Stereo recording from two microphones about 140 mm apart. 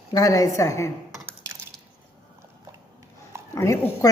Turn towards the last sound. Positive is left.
turn(degrees=20)  # may be behind; listen again after turning